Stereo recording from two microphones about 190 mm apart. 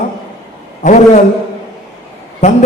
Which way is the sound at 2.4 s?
35° left (ahead or behind).